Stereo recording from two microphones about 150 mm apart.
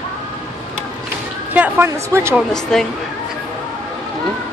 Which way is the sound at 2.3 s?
Centre (ahead or behind).